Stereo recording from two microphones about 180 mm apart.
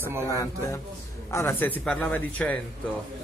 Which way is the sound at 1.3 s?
10° left (ahead or behind).